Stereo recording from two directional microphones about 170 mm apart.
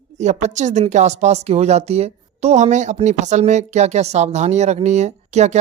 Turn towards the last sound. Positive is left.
turn(degrees=-40)  # may be behind; listen again after turning